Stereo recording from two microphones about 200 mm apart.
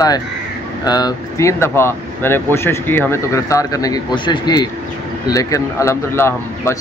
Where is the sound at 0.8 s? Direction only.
20° left (ahead or behind).